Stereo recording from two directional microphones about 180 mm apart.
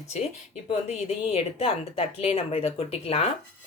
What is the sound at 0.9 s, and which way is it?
Speech, 35° left (ahead or behind).